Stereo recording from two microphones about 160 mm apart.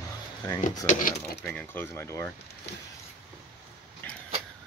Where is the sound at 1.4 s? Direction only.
10° left (ahead or behind).